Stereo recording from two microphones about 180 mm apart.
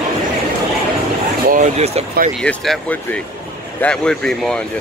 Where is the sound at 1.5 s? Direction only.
40° right (ahead or behind).